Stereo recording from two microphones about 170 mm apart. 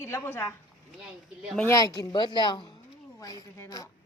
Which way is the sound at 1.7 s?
20° left (ahead or behind).